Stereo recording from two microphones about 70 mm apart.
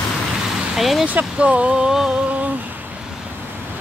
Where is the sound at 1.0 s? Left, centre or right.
Centre.